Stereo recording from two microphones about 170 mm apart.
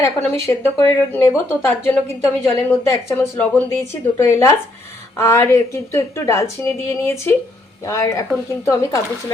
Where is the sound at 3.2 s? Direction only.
10° left (ahead or behind).